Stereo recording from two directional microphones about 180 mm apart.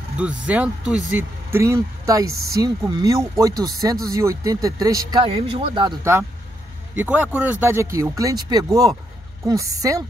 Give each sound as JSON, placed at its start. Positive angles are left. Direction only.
{"t": 0.2, "sound": "speech", "side_deg": -5}
{"t": 7.0, "sound": "speech", "side_deg": -5}